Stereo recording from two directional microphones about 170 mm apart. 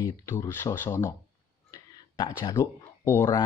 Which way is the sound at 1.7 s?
25° left (ahead or behind).